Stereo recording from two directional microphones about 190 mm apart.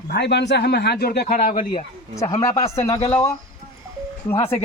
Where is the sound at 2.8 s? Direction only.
15° left (ahead or behind).